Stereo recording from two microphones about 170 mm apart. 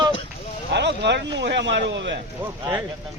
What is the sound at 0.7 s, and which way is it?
A man's voice, 90° right.